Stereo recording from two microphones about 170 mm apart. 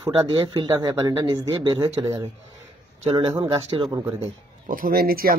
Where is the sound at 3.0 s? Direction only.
40° right (ahead or behind).